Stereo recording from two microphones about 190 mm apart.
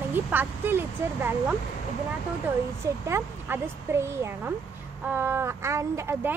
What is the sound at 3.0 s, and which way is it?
A woman's voice, 10° right (ahead or behind).